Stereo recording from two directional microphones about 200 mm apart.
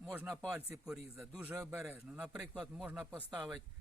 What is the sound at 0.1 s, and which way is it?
A man's voice, 5° right (ahead or behind).